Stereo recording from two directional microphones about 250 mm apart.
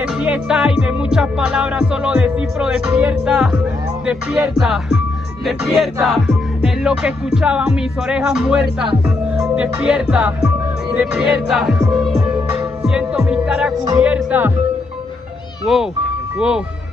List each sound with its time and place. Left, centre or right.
0.2 s music: centre
13.8 s speech: centre
15.6 s speech: centre
16.3 s music: centre